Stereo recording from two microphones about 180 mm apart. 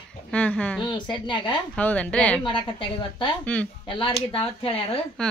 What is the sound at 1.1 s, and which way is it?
Speech, 25° left (ahead or behind).